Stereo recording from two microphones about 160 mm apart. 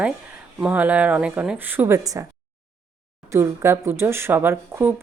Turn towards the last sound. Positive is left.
turn(degrees=-15)  # may be behind; listen again after turning